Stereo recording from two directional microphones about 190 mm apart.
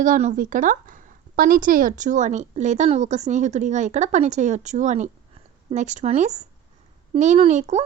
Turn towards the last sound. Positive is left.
turn(degrees=-35)  # may be behind; listen again after turning